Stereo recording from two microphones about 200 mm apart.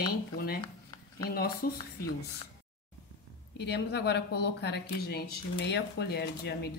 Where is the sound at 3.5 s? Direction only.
55° left (ahead or behind).